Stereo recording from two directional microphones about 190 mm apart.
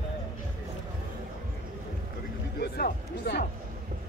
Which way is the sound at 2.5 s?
55° left (ahead or behind).